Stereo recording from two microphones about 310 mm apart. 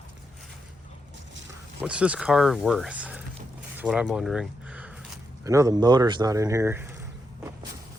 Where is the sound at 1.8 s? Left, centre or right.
Centre.